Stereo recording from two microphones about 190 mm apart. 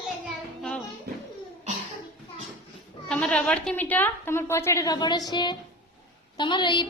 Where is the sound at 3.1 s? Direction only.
5° left (ahead or behind).